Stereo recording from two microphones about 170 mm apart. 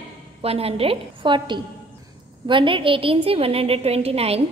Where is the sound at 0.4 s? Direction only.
35° right (ahead or behind).